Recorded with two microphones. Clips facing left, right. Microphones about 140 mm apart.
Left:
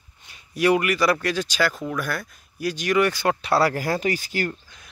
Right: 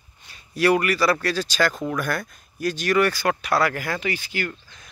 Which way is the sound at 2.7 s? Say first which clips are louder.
Even; 15° left (ahead or behind).